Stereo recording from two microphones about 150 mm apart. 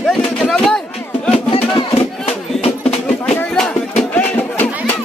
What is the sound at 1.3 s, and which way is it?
Music, 40° left (ahead or behind).